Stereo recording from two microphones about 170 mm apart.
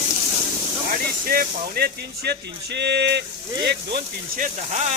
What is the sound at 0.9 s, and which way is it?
Speech, 60° right (ahead or behind).